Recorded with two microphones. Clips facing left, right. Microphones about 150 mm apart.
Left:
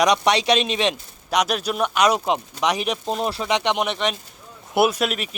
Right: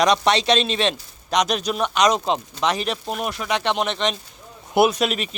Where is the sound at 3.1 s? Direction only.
25° left (ahead or behind).